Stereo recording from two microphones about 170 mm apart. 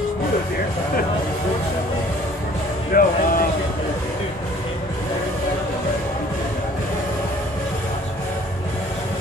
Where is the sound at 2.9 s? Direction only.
55° left (ahead or behind).